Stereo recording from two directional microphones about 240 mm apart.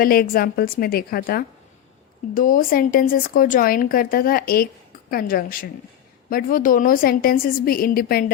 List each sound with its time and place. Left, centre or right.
0.0 s a woman's voice: left